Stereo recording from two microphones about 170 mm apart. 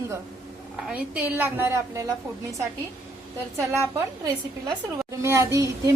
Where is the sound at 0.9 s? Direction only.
5° right (ahead or behind).